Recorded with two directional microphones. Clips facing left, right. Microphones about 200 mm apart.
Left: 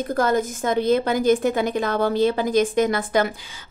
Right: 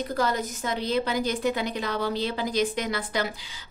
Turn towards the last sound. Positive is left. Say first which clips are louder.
# left 8 dB
turn(degrees=50)  # may be behind; listen again after turning